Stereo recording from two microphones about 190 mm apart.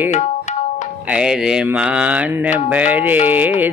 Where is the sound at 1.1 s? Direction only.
5° right (ahead or behind).